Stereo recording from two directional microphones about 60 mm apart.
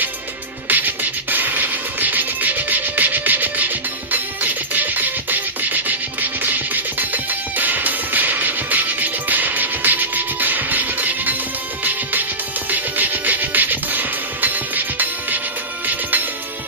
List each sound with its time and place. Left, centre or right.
0.7 s music: right